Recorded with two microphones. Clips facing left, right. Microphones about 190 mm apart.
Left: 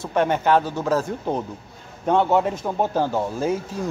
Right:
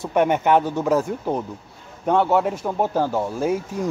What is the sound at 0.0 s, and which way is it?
Speech, 15° right (ahead or behind).